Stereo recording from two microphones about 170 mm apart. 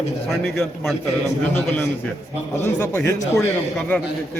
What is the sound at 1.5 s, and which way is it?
Speech, 15° left (ahead or behind).